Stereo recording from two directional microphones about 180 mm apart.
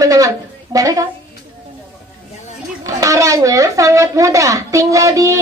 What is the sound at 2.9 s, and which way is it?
Speech, 20° right (ahead or behind).